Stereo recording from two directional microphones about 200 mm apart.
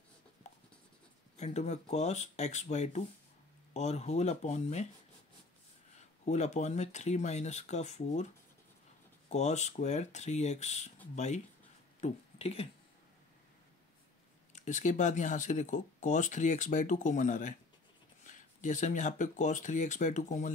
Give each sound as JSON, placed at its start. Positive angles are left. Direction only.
{"t": 1.3, "sound": "speech", "side_deg": 35}
{"t": 5.9, "sound": "speech", "side_deg": 35}
{"t": 9.3, "sound": "speech", "side_deg": 35}
{"t": 14.5, "sound": "speech", "side_deg": 35}